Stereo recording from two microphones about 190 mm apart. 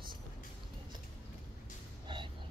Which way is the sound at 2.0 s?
25° right (ahead or behind).